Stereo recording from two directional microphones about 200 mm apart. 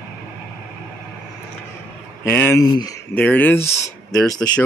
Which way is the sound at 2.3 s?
10° left (ahead or behind).